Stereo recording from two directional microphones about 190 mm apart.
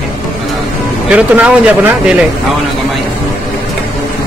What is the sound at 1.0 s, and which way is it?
Speech, 5° right (ahead or behind).